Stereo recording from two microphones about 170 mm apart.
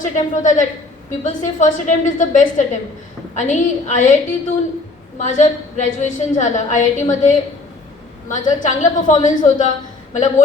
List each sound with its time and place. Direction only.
0.0 s a woman's voice: 45° left (ahead or behind)